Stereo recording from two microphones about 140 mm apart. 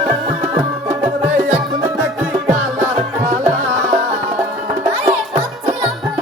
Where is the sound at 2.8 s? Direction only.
25° right (ahead or behind).